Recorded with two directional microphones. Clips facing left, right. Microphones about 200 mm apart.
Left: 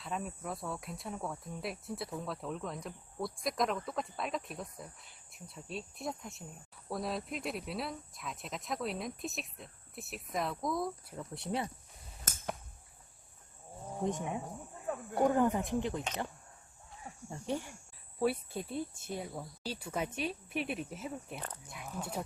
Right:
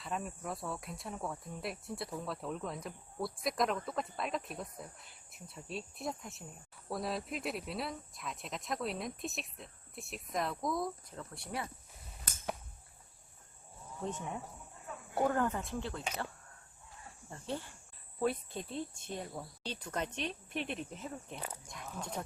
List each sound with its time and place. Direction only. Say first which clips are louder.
0.0 s speech: even; centre (ahead or behind)
11.2 s speech: left 5 dB; 20° left (ahead or behind)
12.3 s a sound: left 5 dB; 45° left (ahead or behind)
14.0 s speech: left 5 dB; 15° left (ahead or behind)
15.2 s speech: left 3 dB; 15° left (ahead or behind)
17.2 s speech: left 4 dB; 10° left (ahead or behind)